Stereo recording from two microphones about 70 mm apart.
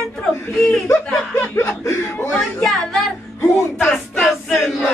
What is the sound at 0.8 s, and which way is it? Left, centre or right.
Speech, left.